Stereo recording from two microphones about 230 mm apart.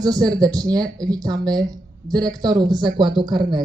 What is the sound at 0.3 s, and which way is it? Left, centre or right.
A woman's voice, centre.